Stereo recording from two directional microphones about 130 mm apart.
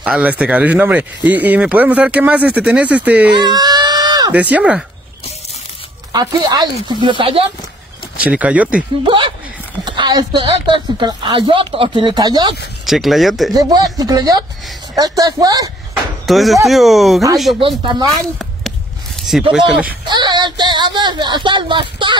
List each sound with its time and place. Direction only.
0.0 s speech: 10° right (ahead or behind)
3.3 s a sound: 30° right (ahead or behind)
4.3 s speech: 10° right (ahead or behind)
6.1 s a woman's voice: 35° right (ahead or behind)
8.2 s speech: 10° right (ahead or behind)
9.0 s a woman's voice: 40° right (ahead or behind)
12.8 s speech: centre (ahead or behind)
13.5 s speech: 30° right (ahead or behind)
16.3 s speech: centre (ahead or behind)
17.6 s a woman's voice: 40° right (ahead or behind)
18.1 s speech: centre (ahead or behind)
19.5 s speech: 10° right (ahead or behind)
20.1 s a woman's voice: 35° right (ahead or behind)